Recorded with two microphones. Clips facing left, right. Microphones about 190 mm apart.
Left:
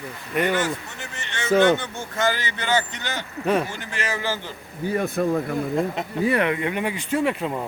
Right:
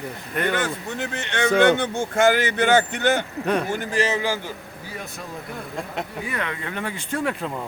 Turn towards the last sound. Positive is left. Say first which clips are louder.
# left 3 dB
turn(degrees=5)  # may be behind; listen again after turning